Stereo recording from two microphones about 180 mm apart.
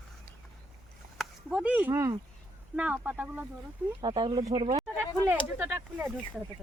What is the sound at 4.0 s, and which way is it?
Speech, 25° right (ahead or behind).